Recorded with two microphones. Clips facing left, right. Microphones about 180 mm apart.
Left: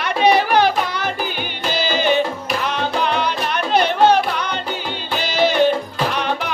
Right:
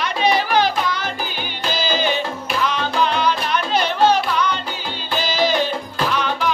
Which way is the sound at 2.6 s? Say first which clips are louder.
Right 2 dB; 55° left (ahead or behind).